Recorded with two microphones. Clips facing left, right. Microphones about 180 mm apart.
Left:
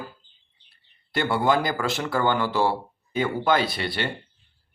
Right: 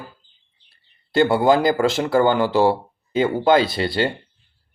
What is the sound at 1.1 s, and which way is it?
Speech, 25° right (ahead or behind).